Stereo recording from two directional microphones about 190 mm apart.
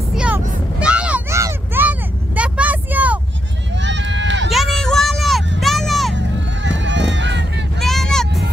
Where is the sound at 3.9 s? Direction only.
70° right (ahead or behind).